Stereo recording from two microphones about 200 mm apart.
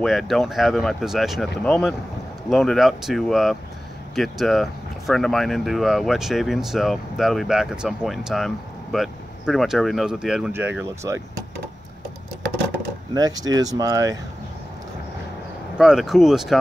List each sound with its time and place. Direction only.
0.0 s speech: centre (ahead or behind)
13.1 s speech: 20° right (ahead or behind)
15.8 s speech: centre (ahead or behind)